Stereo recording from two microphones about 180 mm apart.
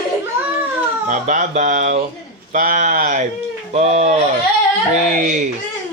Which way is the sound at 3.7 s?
40° right (ahead or behind).